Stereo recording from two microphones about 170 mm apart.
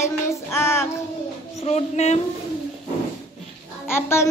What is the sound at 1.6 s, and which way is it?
Speech, 40° left (ahead or behind).